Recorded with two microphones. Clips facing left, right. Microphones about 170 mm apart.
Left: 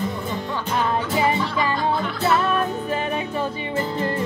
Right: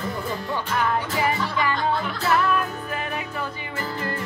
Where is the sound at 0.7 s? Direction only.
20° left (ahead or behind).